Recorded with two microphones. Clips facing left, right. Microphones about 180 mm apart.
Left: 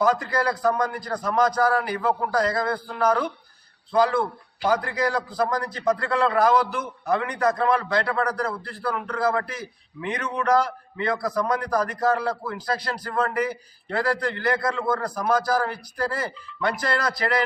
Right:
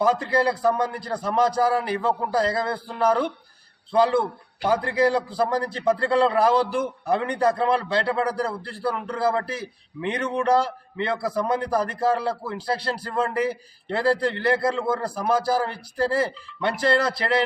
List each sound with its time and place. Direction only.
0.0 s a man's voice: 30° right (ahead or behind)